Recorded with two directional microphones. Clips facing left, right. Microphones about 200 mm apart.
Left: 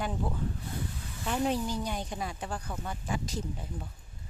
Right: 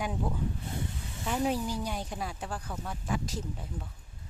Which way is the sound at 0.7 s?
25° right (ahead or behind).